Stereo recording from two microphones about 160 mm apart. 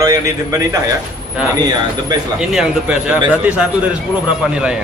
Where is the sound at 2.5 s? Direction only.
5° right (ahead or behind).